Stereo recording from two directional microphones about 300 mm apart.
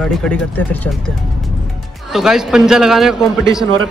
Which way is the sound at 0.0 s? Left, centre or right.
Centre.